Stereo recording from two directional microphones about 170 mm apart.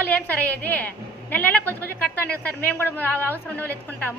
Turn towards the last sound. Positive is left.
turn(degrees=10)  # may be behind; listen again after turning